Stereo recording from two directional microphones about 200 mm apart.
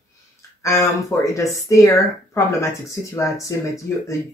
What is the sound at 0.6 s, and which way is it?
Speech, 15° left (ahead or behind).